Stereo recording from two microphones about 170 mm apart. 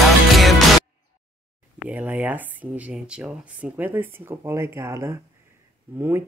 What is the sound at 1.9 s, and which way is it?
Speech, 10° right (ahead or behind).